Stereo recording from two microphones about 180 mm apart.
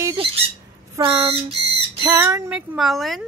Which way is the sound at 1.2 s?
30° right (ahead or behind).